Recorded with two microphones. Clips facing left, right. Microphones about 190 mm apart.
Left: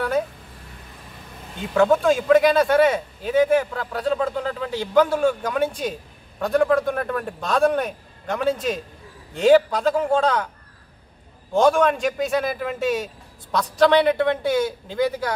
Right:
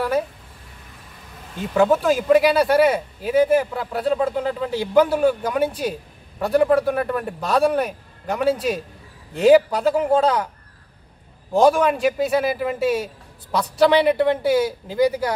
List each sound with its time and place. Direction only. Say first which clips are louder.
1.6 s a man's voice: even; centre (ahead or behind)
11.5 s speech: right 1 dB; centre (ahead or behind)